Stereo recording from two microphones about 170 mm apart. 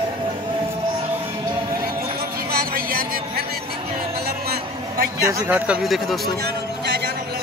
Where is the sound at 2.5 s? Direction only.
60° right (ahead or behind).